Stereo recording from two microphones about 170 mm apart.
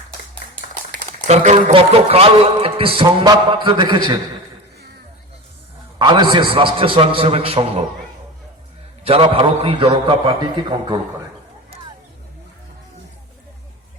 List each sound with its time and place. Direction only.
1.3 s a man's voice: 40° right (ahead or behind)
6.0 s a man's voice: 25° right (ahead or behind)
9.0 s a man's voice: 35° right (ahead or behind)